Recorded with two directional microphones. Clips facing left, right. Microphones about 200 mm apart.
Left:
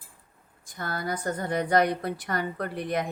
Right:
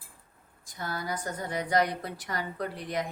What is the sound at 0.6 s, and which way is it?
A woman's voice, 55° left (ahead or behind).